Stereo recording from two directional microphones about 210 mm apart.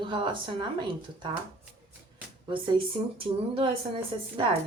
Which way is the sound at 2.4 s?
25° right (ahead or behind).